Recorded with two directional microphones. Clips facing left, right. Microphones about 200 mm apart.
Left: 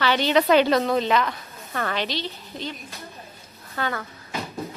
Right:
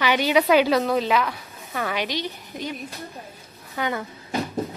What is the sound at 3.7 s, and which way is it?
Speech, 15° right (ahead or behind).